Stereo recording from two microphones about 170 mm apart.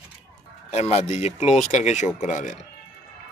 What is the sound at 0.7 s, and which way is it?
Speech, 40° left (ahead or behind).